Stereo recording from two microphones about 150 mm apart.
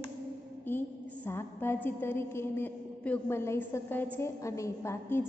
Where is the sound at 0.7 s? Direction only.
15° left (ahead or behind).